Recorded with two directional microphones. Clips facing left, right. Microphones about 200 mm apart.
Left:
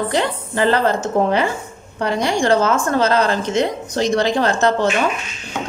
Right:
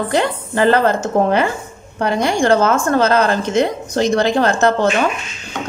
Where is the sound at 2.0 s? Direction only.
50° right (ahead or behind).